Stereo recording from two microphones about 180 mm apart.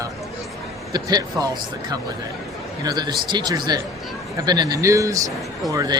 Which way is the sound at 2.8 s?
20° right (ahead or behind).